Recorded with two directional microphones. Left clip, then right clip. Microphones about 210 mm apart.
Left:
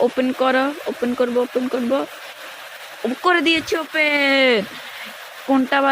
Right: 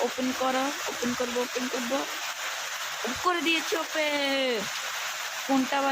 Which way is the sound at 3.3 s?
25° left (ahead or behind).